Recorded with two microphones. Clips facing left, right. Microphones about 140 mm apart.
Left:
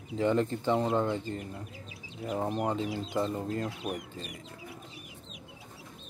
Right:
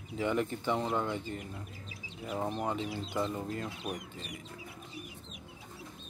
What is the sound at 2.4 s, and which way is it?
Speech, 10° left (ahead or behind).